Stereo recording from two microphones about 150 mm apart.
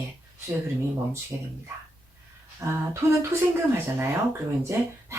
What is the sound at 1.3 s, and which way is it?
Speech, 15° right (ahead or behind).